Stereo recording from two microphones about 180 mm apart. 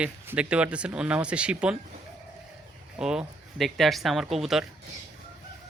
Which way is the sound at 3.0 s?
5° right (ahead or behind).